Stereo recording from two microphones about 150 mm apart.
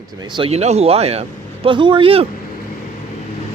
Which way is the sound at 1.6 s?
35° right (ahead or behind).